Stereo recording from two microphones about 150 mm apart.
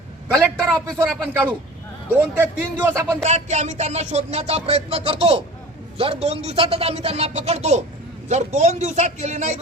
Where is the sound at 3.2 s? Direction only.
50° right (ahead or behind).